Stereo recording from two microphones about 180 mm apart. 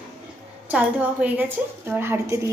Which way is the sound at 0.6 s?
10° right (ahead or behind).